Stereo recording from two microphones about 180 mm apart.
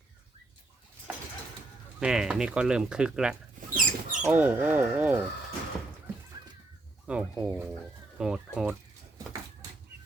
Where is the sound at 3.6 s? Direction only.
45° right (ahead or behind).